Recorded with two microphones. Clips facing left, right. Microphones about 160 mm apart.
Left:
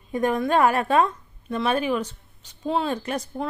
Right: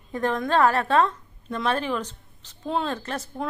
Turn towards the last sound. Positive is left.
turn(degrees=15)  # may be behind; listen again after turning